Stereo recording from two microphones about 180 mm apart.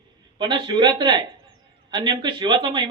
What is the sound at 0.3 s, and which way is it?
Speech, 25° right (ahead or behind).